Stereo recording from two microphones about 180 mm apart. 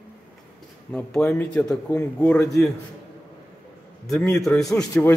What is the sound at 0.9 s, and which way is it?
Speech, 5° left (ahead or behind).